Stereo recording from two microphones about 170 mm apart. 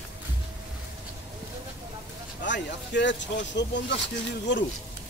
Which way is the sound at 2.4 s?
90° left.